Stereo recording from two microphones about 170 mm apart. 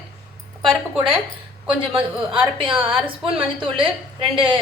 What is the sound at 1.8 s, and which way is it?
A woman's voice, 30° right (ahead or behind).